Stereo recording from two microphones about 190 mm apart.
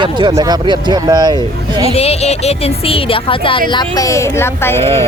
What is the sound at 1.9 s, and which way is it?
Speech, 30° left (ahead or behind).